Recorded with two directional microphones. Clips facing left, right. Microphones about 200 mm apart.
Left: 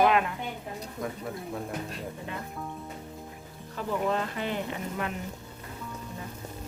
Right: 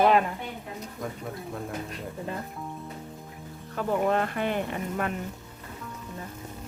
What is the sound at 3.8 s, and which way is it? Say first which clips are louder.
Speech: right 4 dB; 50° right (ahead or behind).